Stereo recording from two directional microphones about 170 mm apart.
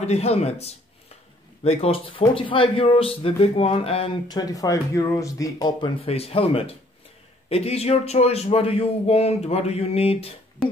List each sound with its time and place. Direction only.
0.0 s a man's voice: 40° left (ahead or behind)
4.3 s a man's voice: 20° left (ahead or behind)